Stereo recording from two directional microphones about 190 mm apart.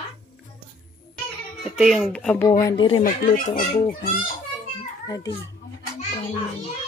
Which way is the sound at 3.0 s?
45° left (ahead or behind).